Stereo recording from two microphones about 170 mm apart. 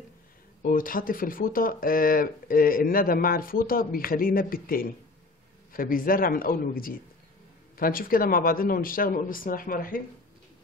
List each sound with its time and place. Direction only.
0.6 s speech: 55° left (ahead or behind)